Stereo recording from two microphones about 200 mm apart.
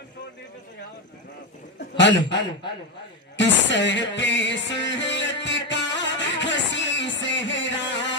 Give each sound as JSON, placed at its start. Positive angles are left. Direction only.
{"t": 2.0, "sound": "a man's voice", "side_deg": 65}
{"t": 3.3, "sound": "music", "side_deg": 65}